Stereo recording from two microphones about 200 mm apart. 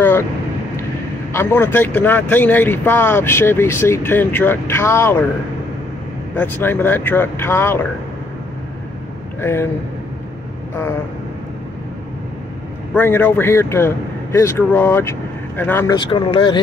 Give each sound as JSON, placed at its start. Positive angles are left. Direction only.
{"t": 1.3, "sound": "speech", "side_deg": 10}
{"t": 6.3, "sound": "speech", "side_deg": 10}
{"t": 9.4, "sound": "speech", "side_deg": 10}
{"t": 12.9, "sound": "speech", "side_deg": 10}
{"t": 16.0, "sound": "speech", "side_deg": 25}